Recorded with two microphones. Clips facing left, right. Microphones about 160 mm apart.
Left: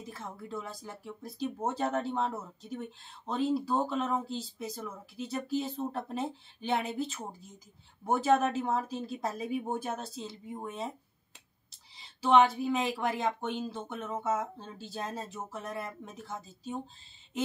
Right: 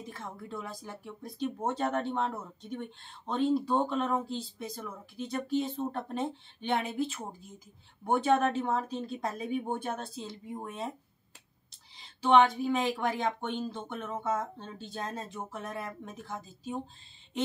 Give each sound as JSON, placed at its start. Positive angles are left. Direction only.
{"t": 0.0, "sound": "speech", "side_deg": 0}